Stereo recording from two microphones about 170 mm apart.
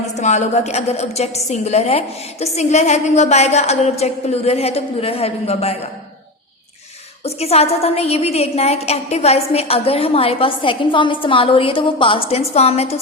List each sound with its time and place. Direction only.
0.2 s a woman's voice: 40° left (ahead or behind)
7.3 s a woman's voice: 35° left (ahead or behind)